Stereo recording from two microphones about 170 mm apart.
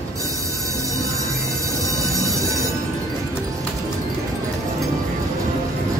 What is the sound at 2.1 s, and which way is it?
Train, 20° right (ahead or behind).